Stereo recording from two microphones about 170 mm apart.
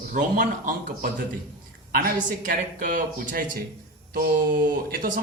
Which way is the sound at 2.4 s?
55° right (ahead or behind).